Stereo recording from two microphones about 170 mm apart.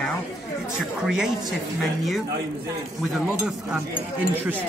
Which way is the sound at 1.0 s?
5° right (ahead or behind).